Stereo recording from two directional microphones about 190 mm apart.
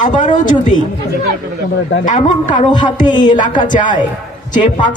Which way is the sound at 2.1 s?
40° left (ahead or behind).